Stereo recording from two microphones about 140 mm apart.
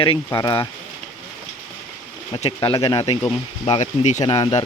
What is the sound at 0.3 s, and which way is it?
Speech, 25° left (ahead or behind).